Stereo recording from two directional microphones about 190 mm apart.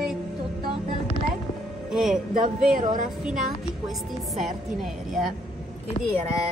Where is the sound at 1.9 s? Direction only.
Centre (ahead or behind).